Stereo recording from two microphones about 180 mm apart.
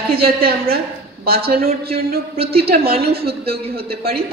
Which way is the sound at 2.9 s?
60° right (ahead or behind).